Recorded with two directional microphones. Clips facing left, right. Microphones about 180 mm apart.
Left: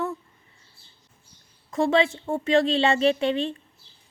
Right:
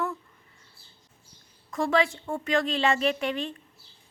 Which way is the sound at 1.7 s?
25° left (ahead or behind).